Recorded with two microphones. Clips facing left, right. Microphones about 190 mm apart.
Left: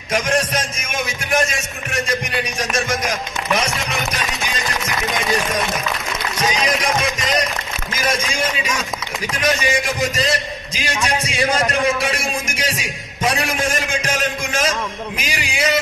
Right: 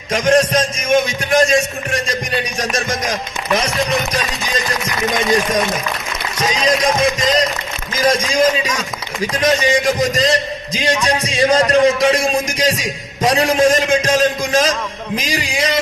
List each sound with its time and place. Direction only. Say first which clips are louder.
0.1 s speech: right 6 dB; 30° right (ahead or behind)
6.4 s music: right 4 dB; 30° right (ahead or behind)
7.9 s speech: right 7 dB; 30° right (ahead or behind)